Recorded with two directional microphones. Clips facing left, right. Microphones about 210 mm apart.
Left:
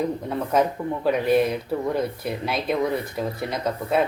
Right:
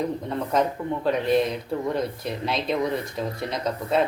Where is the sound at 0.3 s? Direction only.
5° left (ahead or behind).